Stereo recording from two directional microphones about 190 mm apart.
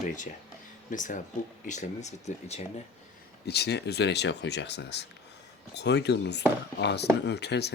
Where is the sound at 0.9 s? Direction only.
40° left (ahead or behind).